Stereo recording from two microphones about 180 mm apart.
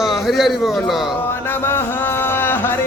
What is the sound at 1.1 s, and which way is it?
Music, 10° left (ahead or behind).